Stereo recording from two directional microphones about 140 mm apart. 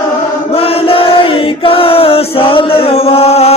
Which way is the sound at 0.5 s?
45° left (ahead or behind).